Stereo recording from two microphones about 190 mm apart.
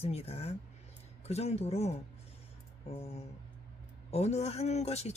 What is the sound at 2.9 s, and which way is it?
Speech, 30° left (ahead or behind).